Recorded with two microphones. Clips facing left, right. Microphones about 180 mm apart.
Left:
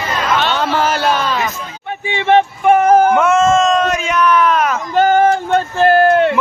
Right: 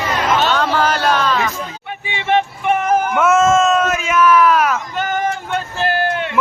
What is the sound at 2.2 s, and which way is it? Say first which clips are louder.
Vehicle: left 5 dB; 40° left (ahead or behind).